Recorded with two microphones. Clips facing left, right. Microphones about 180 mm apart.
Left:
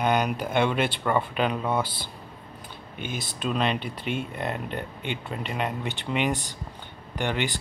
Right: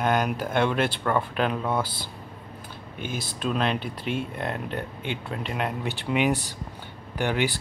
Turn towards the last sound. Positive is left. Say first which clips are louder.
# right 2 dB
turn(degrees=-5)  # may be behind; listen again after turning